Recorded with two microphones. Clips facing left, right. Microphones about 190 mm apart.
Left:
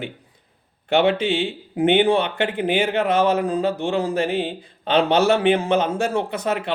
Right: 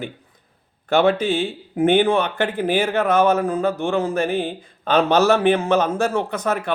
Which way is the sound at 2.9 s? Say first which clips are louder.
Right 1 dB; 50° right (ahead or behind).